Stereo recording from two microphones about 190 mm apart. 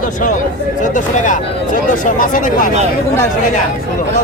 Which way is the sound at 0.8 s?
40° left (ahead or behind).